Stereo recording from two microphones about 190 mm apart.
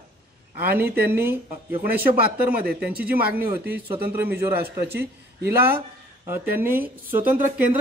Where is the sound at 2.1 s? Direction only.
50° right (ahead or behind).